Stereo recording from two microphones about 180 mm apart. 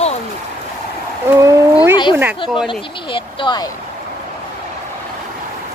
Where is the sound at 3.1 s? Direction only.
25° left (ahead or behind).